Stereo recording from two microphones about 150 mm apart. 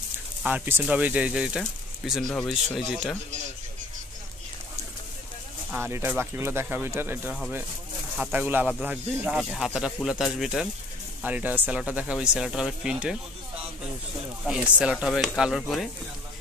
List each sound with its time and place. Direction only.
0.4 s speech: 10° right (ahead or behind)
5.7 s speech: 15° right (ahead or behind)
14.4 s speech: 5° right (ahead or behind)